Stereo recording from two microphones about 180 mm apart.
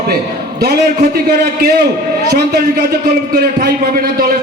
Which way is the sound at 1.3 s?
65° right (ahead or behind).